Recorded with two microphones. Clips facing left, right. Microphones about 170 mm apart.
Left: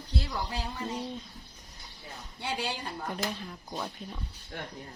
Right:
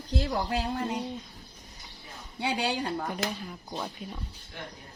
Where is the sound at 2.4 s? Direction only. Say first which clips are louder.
Right 5 dB; 75° right (ahead or behind).